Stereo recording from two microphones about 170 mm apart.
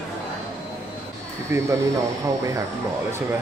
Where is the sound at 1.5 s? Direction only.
15° right (ahead or behind).